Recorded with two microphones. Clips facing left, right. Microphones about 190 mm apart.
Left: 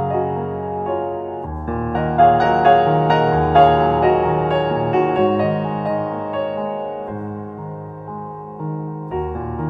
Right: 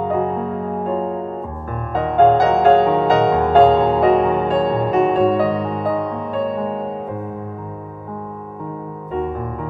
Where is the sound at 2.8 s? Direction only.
Centre (ahead or behind).